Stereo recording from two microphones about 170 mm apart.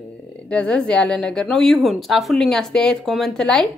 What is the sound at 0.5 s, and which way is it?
Speech, 5° left (ahead or behind).